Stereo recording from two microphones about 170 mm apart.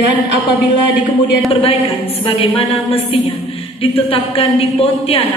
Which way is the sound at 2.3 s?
35° left (ahead or behind).